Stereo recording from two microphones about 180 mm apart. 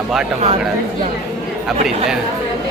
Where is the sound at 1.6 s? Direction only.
Centre (ahead or behind).